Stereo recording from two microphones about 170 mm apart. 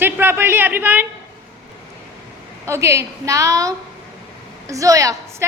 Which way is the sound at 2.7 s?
15° right (ahead or behind).